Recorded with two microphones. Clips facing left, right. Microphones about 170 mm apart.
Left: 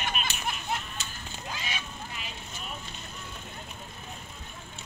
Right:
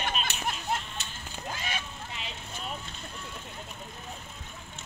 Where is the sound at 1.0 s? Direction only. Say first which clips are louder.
Left 2 dB; 60° right (ahead or behind).